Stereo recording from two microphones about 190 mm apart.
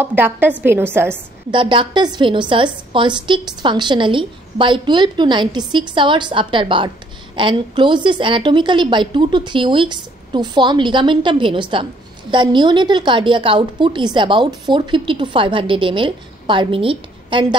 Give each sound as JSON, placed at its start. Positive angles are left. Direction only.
{"t": 0.0, "sound": "a woman's voice", "side_deg": -10}
{"t": 1.5, "sound": "a woman's voice", "side_deg": -25}